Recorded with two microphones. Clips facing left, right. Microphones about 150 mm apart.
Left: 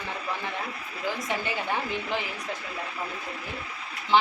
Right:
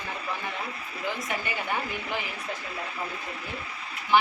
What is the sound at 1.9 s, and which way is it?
Speech, 20° left (ahead or behind).